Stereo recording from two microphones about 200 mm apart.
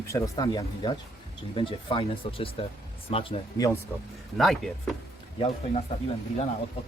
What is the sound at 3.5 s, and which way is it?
Speech, 15° left (ahead or behind).